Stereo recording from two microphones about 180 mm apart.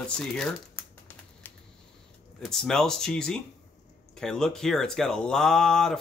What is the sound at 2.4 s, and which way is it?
Speech, centre (ahead or behind).